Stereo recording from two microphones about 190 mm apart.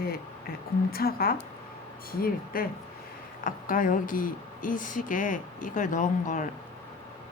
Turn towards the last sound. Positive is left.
turn(degrees=40)  # may be behind; listen again after turning